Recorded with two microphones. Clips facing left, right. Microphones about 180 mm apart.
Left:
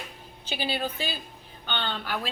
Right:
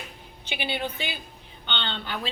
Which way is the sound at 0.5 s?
20° right (ahead or behind).